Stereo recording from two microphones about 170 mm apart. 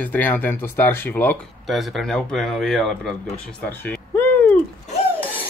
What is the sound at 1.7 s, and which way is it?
A man's voice, centre (ahead or behind).